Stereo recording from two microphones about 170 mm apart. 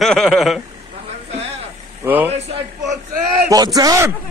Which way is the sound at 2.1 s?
10° right (ahead or behind).